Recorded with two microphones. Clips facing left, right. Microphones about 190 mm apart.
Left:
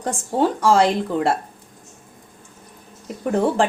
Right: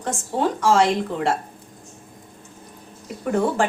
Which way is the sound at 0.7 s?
35° left (ahead or behind).